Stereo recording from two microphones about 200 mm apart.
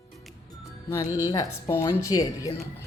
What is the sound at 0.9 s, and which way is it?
Speech, 15° left (ahead or behind).